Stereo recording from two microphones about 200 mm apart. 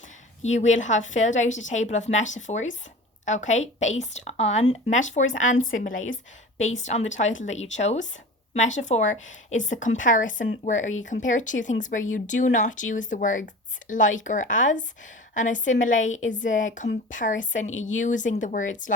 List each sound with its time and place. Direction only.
0.4 s speech: 35° left (ahead or behind)